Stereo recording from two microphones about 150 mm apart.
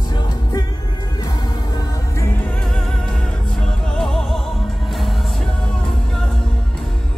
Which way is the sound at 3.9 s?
5° left (ahead or behind).